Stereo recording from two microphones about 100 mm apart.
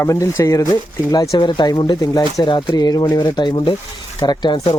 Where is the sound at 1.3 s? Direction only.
50° left (ahead or behind).